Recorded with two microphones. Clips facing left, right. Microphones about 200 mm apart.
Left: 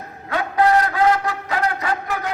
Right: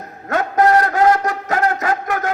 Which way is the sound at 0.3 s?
45° right (ahead or behind).